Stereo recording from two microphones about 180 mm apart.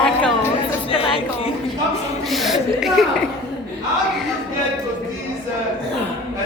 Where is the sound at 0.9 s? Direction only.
30° left (ahead or behind).